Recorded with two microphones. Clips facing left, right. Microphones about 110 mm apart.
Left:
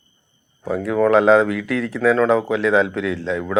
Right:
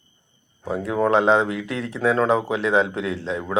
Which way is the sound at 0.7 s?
30° right (ahead or behind).